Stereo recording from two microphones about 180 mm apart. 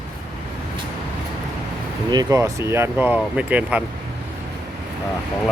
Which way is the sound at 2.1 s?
20° right (ahead or behind).